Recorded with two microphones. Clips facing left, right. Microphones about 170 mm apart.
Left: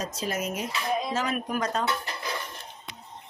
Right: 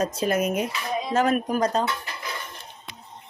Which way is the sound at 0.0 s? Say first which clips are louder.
Right 7 dB; 55° right (ahead or behind).